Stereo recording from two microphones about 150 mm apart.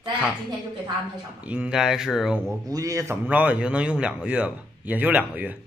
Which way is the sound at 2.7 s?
25° right (ahead or behind).